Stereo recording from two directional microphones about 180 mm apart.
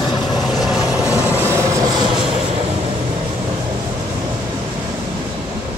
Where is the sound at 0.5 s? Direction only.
Centre (ahead or behind); by 2.2 s 25° right (ahead or behind).